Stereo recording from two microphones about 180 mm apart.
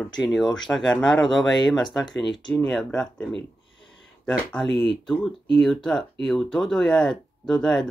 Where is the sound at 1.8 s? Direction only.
25° left (ahead or behind).